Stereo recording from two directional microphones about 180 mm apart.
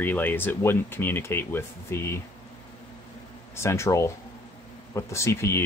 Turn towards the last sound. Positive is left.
turn(degrees=15)  # may be behind; listen again after turning